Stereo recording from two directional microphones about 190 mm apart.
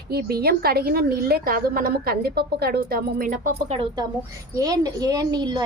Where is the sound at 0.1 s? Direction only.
55° right (ahead or behind).